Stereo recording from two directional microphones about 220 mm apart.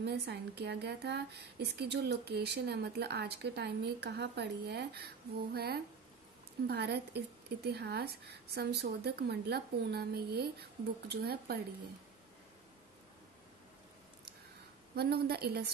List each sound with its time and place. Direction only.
0.0 s a woman's voice: 50° right (ahead or behind)
15.0 s a woman's voice: 45° right (ahead or behind)